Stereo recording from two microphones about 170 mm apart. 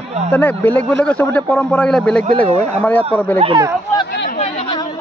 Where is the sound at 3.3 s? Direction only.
35° right (ahead or behind).